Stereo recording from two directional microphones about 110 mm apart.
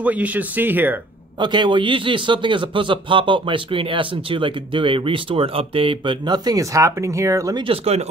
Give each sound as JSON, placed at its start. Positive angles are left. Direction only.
{"t": 0.0, "sound": "speech", "side_deg": -15}
{"t": 1.4, "sound": "a man's voice", "side_deg": -45}
{"t": 7.5, "sound": "speech", "side_deg": -55}